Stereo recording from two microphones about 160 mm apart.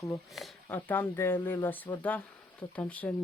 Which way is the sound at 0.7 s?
10° left (ahead or behind).